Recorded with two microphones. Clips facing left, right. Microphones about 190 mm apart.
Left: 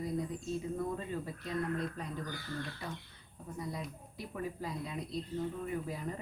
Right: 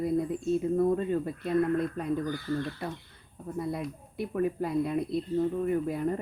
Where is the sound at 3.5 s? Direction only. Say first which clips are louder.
Right 8 dB; 60° right (ahead or behind).